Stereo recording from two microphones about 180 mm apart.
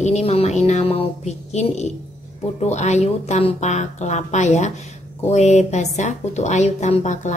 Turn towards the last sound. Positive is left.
turn(degrees=40)  # may be behind; listen again after turning